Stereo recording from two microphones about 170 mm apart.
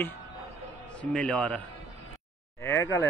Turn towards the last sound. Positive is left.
turn(degrees=15)  # may be behind; listen again after turning